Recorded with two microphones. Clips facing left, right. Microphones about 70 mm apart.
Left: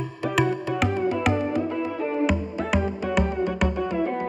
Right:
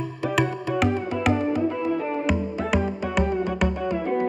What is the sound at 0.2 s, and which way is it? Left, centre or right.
Music, centre.